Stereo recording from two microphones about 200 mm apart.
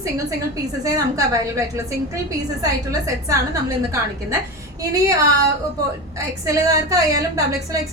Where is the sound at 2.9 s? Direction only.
15° right (ahead or behind).